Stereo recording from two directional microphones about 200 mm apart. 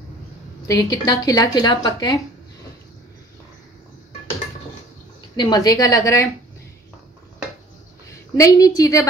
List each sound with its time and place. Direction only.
0.7 s speech: 20° left (ahead or behind)
5.3 s a woman's voice: 20° left (ahead or behind)
8.1 s a woman's voice: 15° left (ahead or behind)